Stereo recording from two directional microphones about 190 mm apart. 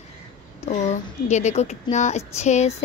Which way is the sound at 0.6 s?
35° left (ahead or behind).